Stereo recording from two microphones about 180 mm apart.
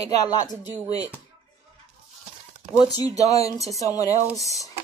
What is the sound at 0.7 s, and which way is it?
Speech, 20° left (ahead or behind).